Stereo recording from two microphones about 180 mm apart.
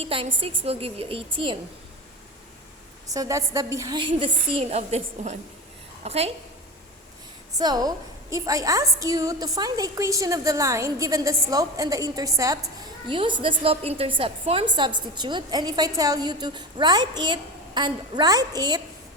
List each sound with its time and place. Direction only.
0.0 s a woman's voice: 30° right (ahead or behind)
3.1 s a woman's voice: 20° right (ahead or behind); by 6.3 s 35° right (ahead or behind)
7.6 s a woman's voice: 20° right (ahead or behind)